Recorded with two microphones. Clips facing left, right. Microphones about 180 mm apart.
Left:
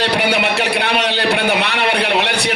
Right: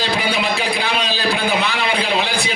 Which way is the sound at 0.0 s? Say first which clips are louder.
Left 4 dB; 70° left (ahead or behind).